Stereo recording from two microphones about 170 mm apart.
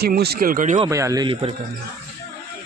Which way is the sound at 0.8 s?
20° right (ahead or behind).